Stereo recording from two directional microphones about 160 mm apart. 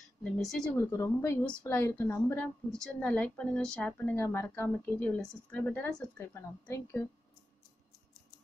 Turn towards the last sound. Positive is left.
turn(degrees=15)  # may be behind; listen again after turning